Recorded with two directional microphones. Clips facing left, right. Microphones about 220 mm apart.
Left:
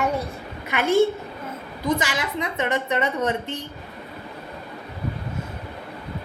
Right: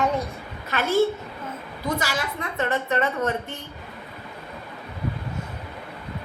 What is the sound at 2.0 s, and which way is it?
A woman's voice, 20° left (ahead or behind).